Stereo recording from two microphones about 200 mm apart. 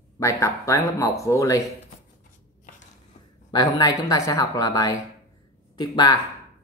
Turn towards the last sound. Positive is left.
turn(degrees=20)  # may be behind; listen again after turning